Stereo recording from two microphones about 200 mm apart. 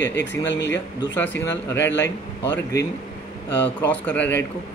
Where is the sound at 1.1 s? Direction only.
10° left (ahead or behind).